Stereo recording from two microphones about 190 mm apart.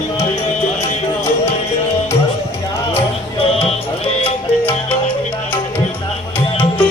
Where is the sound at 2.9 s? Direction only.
30° left (ahead or behind).